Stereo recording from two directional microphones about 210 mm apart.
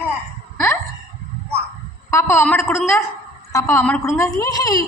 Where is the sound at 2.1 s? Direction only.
15° left (ahead or behind).